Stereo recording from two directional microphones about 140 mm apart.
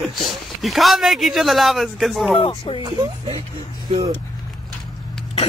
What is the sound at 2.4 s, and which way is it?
Speech, 40° left (ahead or behind).